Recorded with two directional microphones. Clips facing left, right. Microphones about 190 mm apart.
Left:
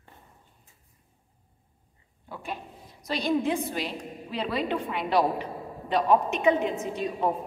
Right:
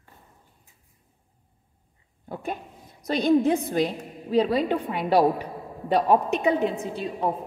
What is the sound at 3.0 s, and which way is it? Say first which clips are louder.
A woman's voice: right 6 dB; 50° right (ahead or behind).